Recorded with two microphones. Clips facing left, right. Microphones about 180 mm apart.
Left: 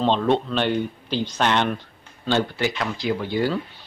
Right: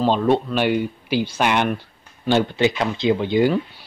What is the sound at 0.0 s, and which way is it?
Speech, 5° right (ahead or behind).